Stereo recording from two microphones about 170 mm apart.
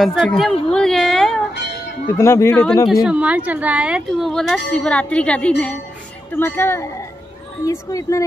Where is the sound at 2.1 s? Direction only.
15° left (ahead or behind).